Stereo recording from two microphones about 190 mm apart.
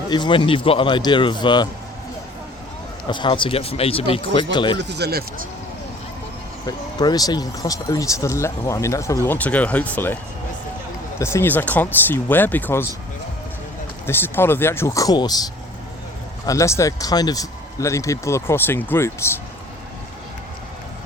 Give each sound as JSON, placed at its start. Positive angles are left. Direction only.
{"t": 0.1, "sound": "speech", "side_deg": 25}
{"t": 3.1, "sound": "speech", "side_deg": 25}
{"t": 4.8, "sound": "speech", "side_deg": -60}
{"t": 6.7, "sound": "speech", "side_deg": 20}
{"t": 11.2, "sound": "speech", "side_deg": 15}
{"t": 14.1, "sound": "speech", "side_deg": 10}
{"t": 16.5, "sound": "speech", "side_deg": 15}